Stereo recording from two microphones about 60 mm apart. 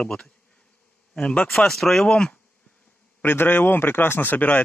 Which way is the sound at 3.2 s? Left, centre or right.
Left.